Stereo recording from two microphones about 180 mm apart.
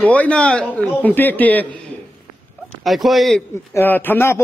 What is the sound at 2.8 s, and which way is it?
Speech, centre (ahead or behind).